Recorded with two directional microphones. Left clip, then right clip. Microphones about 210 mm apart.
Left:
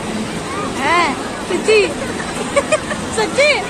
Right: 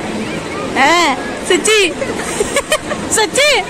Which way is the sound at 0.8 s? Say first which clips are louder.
Right 3 dB; 40° right (ahead or behind).